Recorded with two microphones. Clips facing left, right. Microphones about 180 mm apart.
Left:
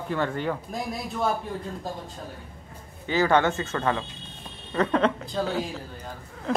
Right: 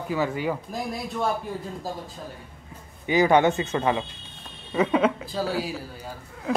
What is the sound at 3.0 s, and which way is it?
Speech, 15° right (ahead or behind).